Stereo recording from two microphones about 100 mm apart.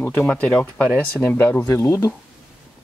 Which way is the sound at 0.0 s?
20° left (ahead or behind).